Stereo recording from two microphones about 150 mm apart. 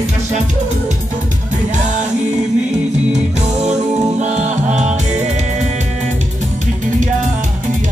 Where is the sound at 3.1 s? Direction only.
50° right (ahead or behind).